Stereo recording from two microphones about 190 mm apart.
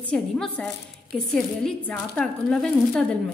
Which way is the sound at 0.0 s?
5° left (ahead or behind).